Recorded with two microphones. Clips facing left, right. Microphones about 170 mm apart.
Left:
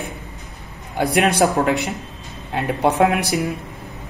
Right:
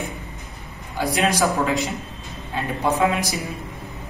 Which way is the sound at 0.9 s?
60° left (ahead or behind).